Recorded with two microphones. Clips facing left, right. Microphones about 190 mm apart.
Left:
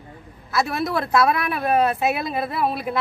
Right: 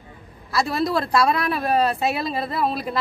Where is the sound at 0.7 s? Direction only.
5° left (ahead or behind).